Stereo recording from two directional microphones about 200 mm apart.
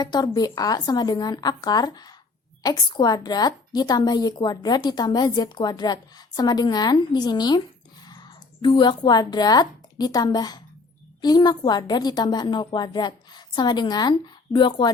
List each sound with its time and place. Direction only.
0.0 s a woman's voice: 20° left (ahead or behind)